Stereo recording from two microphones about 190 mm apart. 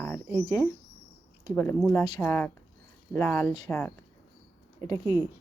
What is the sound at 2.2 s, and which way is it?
Speech, 10° left (ahead or behind).